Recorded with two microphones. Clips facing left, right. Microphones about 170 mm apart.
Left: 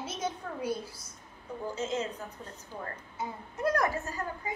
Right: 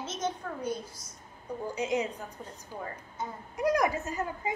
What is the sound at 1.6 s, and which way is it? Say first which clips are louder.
Speech: right 2 dB; 15° right (ahead or behind).